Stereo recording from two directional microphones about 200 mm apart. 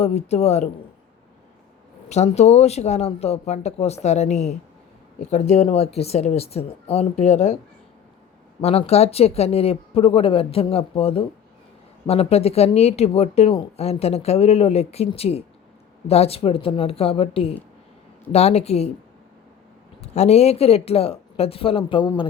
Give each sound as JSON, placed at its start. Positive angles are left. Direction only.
{"t": 0.0, "sound": "speech", "side_deg": 30}
{"t": 2.0, "sound": "speech", "side_deg": 35}
{"t": 8.6, "sound": "speech", "side_deg": 30}
{"t": 20.0, "sound": "speech", "side_deg": 35}